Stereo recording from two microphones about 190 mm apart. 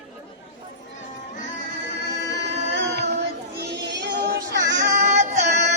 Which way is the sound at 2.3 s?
65° right (ahead or behind).